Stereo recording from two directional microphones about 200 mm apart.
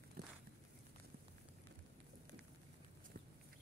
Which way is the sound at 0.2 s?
50° right (ahead or behind).